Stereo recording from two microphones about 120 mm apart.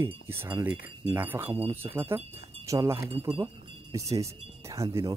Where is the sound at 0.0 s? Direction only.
20° right (ahead or behind).